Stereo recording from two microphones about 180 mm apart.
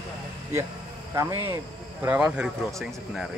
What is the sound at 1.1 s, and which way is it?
A man's voice, 15° right (ahead or behind).